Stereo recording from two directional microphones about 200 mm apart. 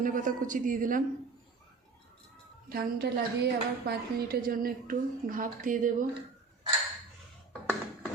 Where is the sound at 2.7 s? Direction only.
55° right (ahead or behind).